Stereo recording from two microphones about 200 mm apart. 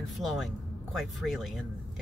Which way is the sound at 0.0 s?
Centre (ahead or behind).